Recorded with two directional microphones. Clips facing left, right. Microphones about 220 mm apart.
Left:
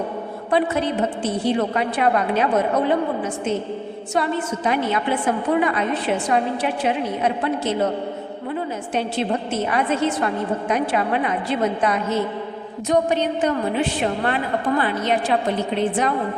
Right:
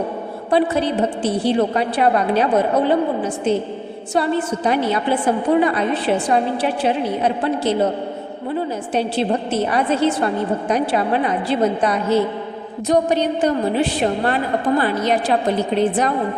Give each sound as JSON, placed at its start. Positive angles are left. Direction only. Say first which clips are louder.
{"t": 0.5, "sound": "a woman's voice", "louder": "right 3 dB", "side_deg": -35}